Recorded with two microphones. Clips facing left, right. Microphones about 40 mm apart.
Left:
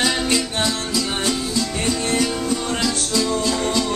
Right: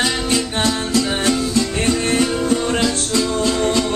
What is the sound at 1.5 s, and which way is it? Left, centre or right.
Music, right.